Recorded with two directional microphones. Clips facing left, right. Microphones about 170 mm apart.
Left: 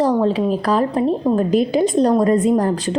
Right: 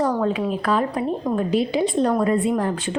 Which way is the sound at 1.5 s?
45° left (ahead or behind).